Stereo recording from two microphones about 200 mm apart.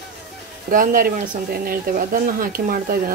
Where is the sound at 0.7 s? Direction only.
45° right (ahead or behind).